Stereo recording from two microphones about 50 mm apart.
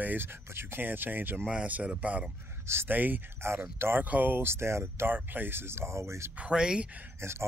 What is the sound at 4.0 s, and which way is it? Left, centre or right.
Speech, right.